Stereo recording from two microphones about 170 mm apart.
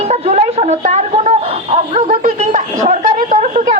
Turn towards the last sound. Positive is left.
turn(degrees=-50)  # may be behind; listen again after turning